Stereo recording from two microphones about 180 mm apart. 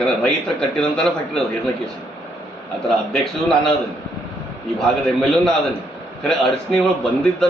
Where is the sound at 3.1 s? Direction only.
5° left (ahead or behind).